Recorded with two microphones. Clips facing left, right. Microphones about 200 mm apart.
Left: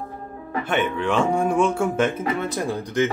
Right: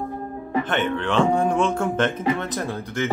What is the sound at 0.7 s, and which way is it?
Speech, 10° left (ahead or behind).